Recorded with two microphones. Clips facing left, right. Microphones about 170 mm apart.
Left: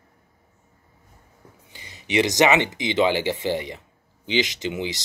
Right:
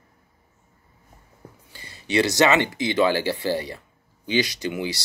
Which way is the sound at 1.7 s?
20° left (ahead or behind).